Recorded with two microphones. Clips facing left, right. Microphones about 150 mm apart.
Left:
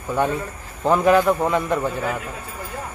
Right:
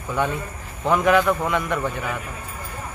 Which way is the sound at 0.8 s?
35° left (ahead or behind).